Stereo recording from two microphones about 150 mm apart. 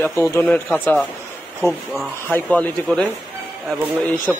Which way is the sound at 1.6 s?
Centre (ahead or behind).